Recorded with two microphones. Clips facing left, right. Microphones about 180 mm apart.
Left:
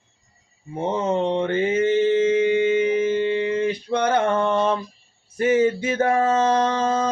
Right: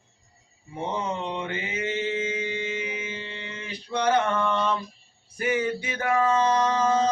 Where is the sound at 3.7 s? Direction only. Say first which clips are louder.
Left 4 dB; 55° left (ahead or behind).